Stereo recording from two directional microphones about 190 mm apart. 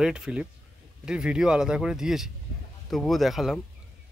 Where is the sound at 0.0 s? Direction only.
5° right (ahead or behind).